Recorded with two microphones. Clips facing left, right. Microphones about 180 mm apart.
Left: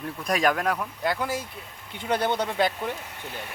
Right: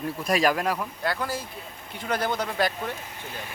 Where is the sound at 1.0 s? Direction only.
20° left (ahead or behind).